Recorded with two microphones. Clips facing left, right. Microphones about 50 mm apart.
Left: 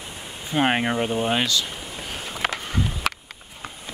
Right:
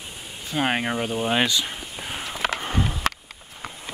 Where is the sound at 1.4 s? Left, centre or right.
Right.